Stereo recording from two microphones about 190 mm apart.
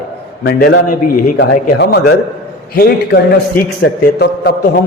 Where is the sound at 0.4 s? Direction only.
65° left (ahead or behind).